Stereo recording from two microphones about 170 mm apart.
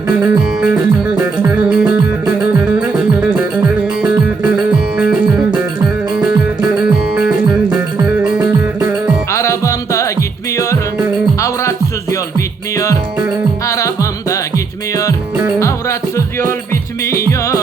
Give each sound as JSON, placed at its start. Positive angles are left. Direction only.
{"t": 0.2, "sound": "music", "side_deg": -5}
{"t": 4.5, "sound": "music", "side_deg": -5}
{"t": 9.3, "sound": "music", "side_deg": 20}
{"t": 12.7, "sound": "music", "side_deg": 20}
{"t": 15.5, "sound": "music", "side_deg": 15}